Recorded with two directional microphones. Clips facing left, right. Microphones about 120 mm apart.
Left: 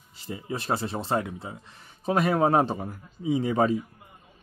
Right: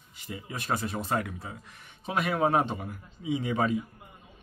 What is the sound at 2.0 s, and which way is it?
Speech, 35° left (ahead or behind).